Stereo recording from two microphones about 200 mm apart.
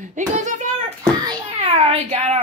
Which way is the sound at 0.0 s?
40° right (ahead or behind).